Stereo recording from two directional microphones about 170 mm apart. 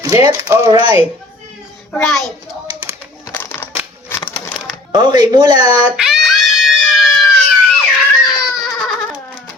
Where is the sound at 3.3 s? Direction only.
15° left (ahead or behind).